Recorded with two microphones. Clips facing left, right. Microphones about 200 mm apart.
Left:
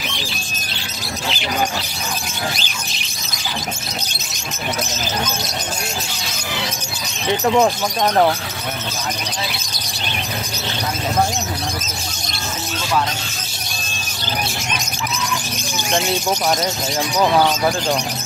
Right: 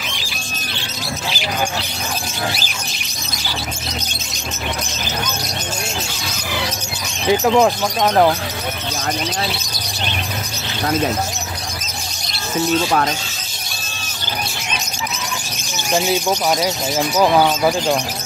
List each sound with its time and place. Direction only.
7.2 s speech: 5° right (ahead or behind)
15.9 s speech: 5° right (ahead or behind)